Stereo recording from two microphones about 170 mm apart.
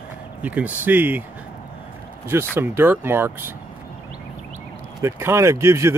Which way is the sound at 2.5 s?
15° right (ahead or behind).